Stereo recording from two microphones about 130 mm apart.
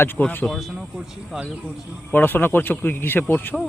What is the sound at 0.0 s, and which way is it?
Speech, 15° left (ahead or behind).